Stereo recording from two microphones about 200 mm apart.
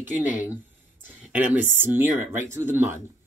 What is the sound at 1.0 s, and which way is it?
Speech, 10° right (ahead or behind).